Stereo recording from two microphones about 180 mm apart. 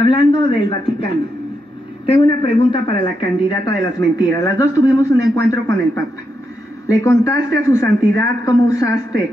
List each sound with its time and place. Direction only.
0.0 s a woman's voice: 30° left (ahead or behind)
6.9 s a man's voice: 15° left (ahead or behind)